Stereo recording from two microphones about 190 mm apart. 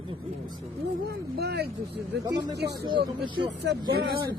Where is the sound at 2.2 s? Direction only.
20° right (ahead or behind).